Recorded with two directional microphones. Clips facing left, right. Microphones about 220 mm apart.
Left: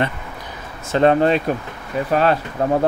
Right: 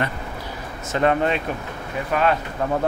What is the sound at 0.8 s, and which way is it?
Speech, 30° left (ahead or behind).